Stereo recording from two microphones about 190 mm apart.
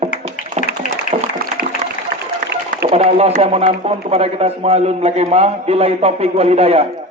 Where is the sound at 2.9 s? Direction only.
35° right (ahead or behind).